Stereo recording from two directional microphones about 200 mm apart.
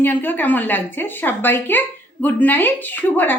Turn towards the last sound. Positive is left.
turn(degrees=10)  # may be behind; listen again after turning